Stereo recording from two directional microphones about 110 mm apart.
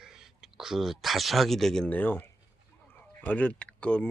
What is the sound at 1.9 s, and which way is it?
Speech, 15° left (ahead or behind).